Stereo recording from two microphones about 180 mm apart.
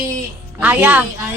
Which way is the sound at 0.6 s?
10° right (ahead or behind).